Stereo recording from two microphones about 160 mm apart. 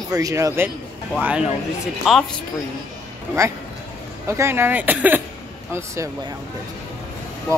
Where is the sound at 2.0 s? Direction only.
5° right (ahead or behind).